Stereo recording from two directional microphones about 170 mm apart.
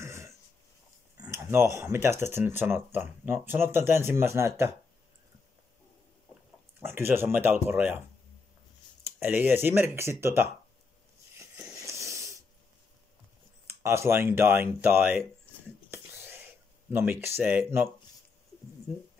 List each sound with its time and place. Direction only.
0.0 s a sound: 15° right (ahead or behind)
1.2 s speech: 15° right (ahead or behind)
6.8 s speech: 15° right (ahead or behind)
9.0 s speech: 10° right (ahead or behind)
11.3 s wheeze: 15° right (ahead or behind)
13.7 s speech: 15° right (ahead or behind)
15.9 s whispering: 10° right (ahead or behind)
16.9 s speech: 15° right (ahead or behind)